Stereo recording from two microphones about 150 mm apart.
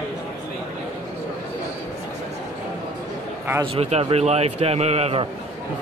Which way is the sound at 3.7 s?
45° right (ahead or behind).